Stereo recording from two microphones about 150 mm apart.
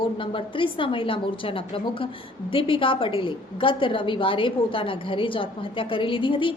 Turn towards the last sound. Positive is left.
turn(degrees=35)  # may be behind; listen again after turning